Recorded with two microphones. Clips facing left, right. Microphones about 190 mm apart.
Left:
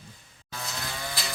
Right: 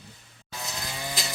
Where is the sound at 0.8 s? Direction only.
15° right (ahead or behind).